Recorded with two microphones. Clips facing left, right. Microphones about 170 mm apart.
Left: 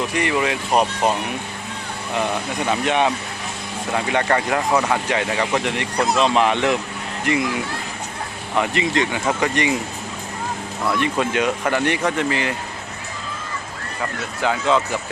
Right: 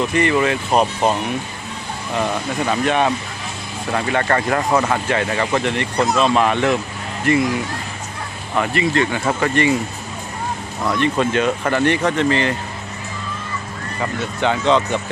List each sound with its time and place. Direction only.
0.1 s speech: 10° left (ahead or behind)
2.1 s speech: 15° left (ahead or behind)
8.5 s speech: 20° left (ahead or behind)
11.0 s speech: 10° left (ahead or behind)
14.0 s speech: centre (ahead or behind)